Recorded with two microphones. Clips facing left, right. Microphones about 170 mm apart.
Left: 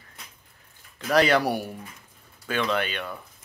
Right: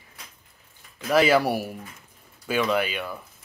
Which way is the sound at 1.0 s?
5° right (ahead or behind).